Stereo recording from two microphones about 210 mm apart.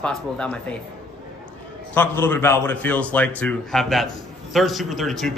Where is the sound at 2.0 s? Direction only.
10° left (ahead or behind).